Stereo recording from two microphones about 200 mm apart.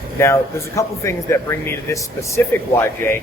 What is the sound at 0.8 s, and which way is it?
Speech, 15° left (ahead or behind).